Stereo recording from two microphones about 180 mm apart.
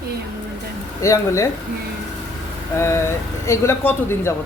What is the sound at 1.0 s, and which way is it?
Speech, 15° left (ahead or behind).